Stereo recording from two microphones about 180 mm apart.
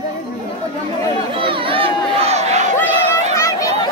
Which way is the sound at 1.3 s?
30° right (ahead or behind).